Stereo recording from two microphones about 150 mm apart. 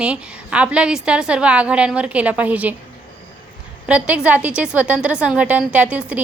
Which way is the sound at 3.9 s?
5° right (ahead or behind).